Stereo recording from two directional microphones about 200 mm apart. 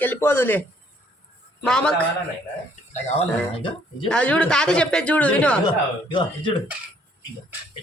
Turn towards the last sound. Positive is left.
turn(degrees=25)  # may be behind; listen again after turning